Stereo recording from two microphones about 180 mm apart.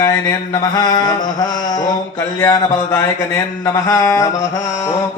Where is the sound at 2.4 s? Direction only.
15° left (ahead or behind).